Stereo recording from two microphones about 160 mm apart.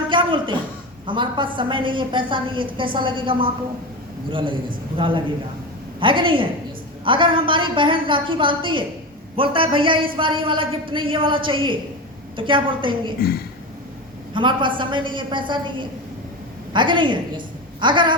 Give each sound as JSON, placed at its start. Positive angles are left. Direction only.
{"t": 0.1, "sound": "a sound", "side_deg": -30}
{"t": 1.0, "sound": "a woman's voice", "side_deg": -30}
{"t": 14.3, "sound": "a woman's voice", "side_deg": -30}